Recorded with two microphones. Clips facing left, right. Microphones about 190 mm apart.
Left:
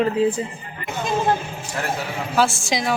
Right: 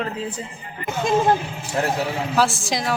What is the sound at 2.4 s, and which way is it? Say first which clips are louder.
Speech: left 2 dB; centre (ahead or behind).